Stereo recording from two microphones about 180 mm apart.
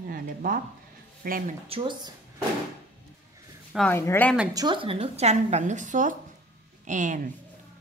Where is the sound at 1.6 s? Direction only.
30° right (ahead or behind).